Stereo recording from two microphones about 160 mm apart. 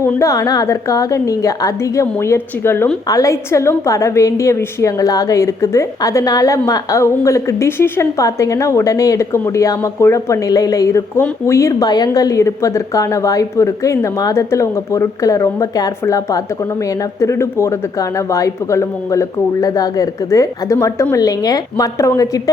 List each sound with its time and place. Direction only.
0.0 s a woman's voice: 15° left (ahead or behind)